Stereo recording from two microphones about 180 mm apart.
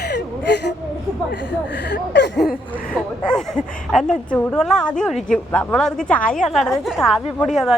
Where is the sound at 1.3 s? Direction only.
80° left.